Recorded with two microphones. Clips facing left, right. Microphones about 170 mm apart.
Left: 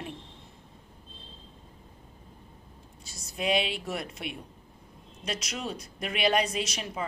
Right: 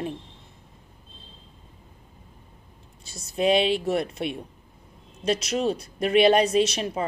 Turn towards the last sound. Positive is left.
turn(degrees=-30)  # may be behind; listen again after turning